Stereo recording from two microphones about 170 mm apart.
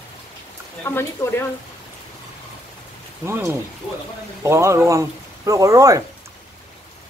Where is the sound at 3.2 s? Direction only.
15° right (ahead or behind).